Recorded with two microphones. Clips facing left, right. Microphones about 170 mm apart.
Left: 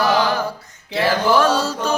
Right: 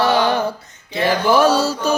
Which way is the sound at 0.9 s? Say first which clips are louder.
Right 1 dB; 10° right (ahead or behind).